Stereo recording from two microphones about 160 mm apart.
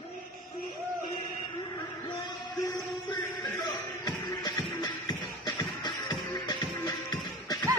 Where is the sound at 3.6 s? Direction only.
25° left (ahead or behind).